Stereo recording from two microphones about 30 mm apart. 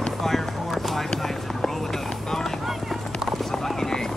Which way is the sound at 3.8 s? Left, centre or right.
Centre.